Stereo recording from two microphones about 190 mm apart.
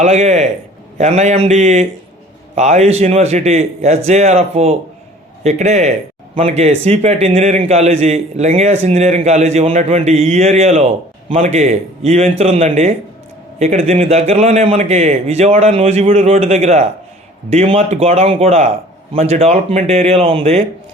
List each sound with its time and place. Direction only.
0.0 s a man's voice: 35° right (ahead or behind)